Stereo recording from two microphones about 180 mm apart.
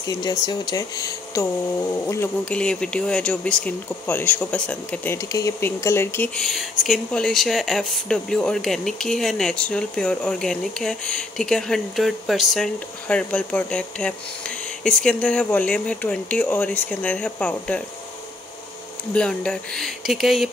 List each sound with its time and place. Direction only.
0.0 s speech: 20° left (ahead or behind)
19.1 s speech: 5° left (ahead or behind)